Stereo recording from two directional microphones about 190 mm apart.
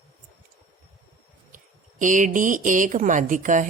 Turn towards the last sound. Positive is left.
turn(degrees=-40)  # may be behind; listen again after turning